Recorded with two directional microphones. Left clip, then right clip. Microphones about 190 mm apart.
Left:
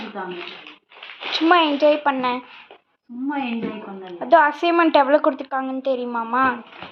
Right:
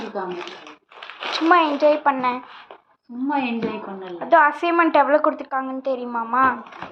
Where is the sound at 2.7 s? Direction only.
20° right (ahead or behind).